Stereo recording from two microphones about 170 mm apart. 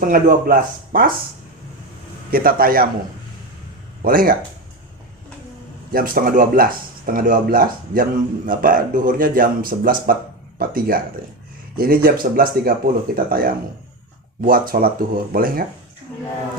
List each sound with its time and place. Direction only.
0.0 s speech: 60° right (ahead or behind)
2.3 s speech: 60° right (ahead or behind)
4.0 s speech: 55° right (ahead or behind)
5.9 s speech: 60° right (ahead or behind)
14.7 s speech: 60° right (ahead or behind)